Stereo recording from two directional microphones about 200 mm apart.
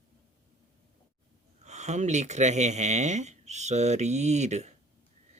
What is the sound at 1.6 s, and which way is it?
Speech, 35° right (ahead or behind).